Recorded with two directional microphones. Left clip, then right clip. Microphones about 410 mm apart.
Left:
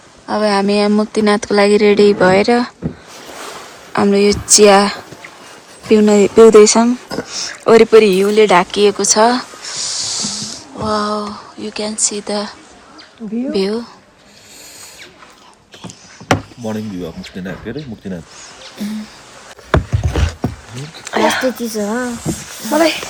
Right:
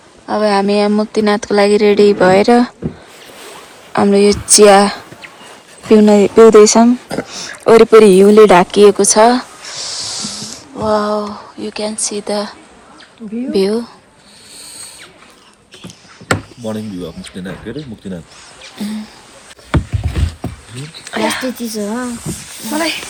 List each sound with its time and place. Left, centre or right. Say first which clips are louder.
0.3 s speech: right 1 dB; centre
3.9 s a woman's voice: right 2 dB; centre
16.6 s speech: right 1 dB; centre
21.1 s speech: left 3 dB; left
21.6 s speech: left 2 dB; centre
21.9 s speech: left 2 dB; left